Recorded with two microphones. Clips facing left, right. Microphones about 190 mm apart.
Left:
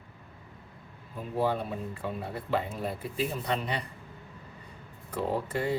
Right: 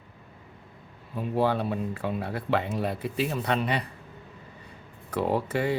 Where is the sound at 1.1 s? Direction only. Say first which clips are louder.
Right 4 dB; 75° right (ahead or behind).